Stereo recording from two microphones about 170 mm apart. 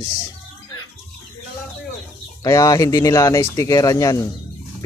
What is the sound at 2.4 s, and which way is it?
Speech, 20° left (ahead or behind).